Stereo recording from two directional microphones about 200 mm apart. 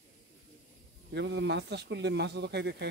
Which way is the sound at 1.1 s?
60° right (ahead or behind).